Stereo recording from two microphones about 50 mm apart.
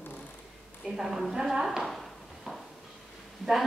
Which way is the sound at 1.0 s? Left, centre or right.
Centre.